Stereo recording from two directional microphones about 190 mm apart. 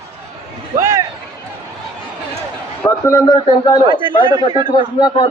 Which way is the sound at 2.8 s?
15° left (ahead or behind).